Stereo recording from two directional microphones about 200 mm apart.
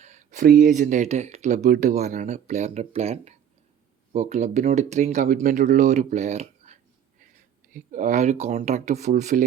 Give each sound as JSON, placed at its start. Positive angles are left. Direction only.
{"t": 0.0, "sound": "speech", "side_deg": -35}